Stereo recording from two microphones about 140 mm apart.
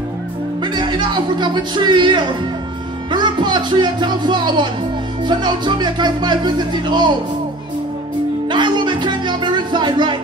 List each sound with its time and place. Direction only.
0.7 s speech: 35° right (ahead or behind)
8.5 s music: 35° right (ahead or behind)